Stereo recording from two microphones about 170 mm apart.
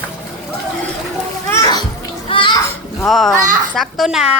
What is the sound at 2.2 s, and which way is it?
Children playing, 30° left (ahead or behind).